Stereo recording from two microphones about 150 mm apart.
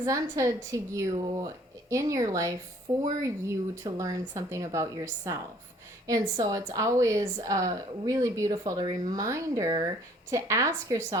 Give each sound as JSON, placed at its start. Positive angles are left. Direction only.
{"t": 0.0, "sound": "speech", "side_deg": -20}